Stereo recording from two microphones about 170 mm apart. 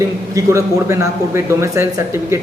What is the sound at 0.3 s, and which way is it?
Speech, 15° right (ahead or behind).